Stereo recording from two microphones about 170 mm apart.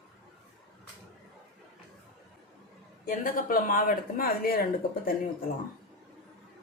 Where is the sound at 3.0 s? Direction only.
55° left (ahead or behind).